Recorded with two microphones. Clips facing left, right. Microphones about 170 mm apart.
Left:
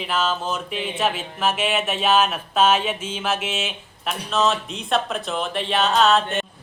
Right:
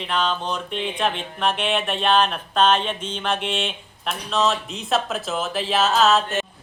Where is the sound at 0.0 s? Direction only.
5° left (ahead or behind).